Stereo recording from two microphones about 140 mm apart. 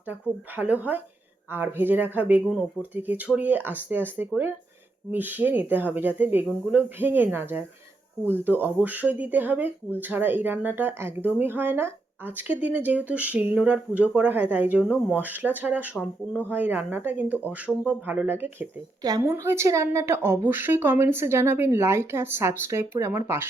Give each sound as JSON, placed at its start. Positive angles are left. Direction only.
{"t": 0.1, "sound": "speech", "side_deg": -10}
{"t": 19.0, "sound": "a woman's voice", "side_deg": -25}